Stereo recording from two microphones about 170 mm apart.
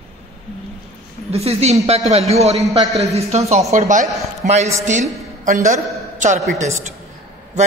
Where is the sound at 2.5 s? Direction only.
Centre (ahead or behind).